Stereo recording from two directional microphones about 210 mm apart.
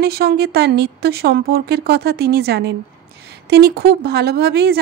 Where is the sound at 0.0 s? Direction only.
50° right (ahead or behind).